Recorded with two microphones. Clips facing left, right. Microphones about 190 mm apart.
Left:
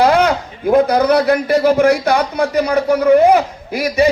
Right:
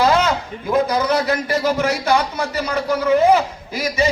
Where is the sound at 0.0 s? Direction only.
55° left (ahead or behind).